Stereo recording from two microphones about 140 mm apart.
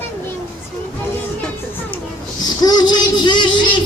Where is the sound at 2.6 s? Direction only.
30° left (ahead or behind).